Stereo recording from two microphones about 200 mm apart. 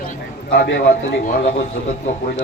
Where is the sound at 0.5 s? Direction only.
55° left (ahead or behind).